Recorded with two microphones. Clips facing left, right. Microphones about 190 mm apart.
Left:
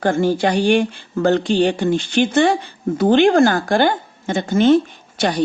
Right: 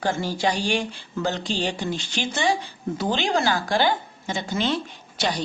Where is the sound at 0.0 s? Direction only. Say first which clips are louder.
Left 8 dB; 55° left (ahead or behind).